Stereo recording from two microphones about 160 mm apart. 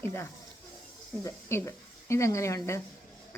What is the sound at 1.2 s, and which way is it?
A woman's voice, 20° left (ahead or behind).